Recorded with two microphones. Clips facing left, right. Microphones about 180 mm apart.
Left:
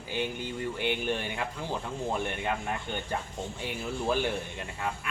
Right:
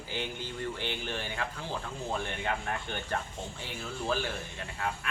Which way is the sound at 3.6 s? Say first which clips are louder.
Left 5 dB; 20° left (ahead or behind).